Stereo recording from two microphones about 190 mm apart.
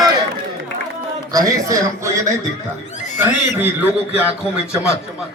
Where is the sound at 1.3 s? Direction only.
15° right (ahead or behind).